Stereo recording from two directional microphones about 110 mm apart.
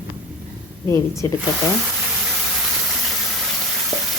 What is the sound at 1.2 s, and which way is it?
Speech, 25° left (ahead or behind).